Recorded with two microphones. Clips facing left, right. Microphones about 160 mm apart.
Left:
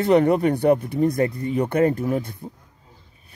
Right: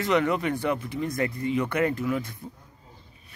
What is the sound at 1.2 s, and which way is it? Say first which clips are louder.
Speech: left 4 dB; 35° left (ahead or behind).